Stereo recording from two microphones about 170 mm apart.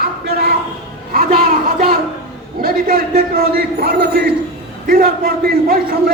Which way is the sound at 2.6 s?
60° right (ahead or behind).